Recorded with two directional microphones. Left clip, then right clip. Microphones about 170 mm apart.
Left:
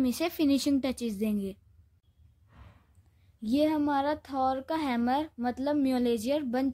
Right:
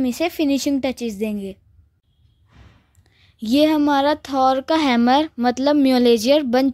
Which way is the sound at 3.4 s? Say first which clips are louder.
Right 11 dB; 70° right (ahead or behind).